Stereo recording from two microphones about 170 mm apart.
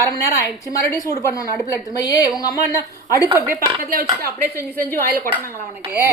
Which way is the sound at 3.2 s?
15° right (ahead or behind).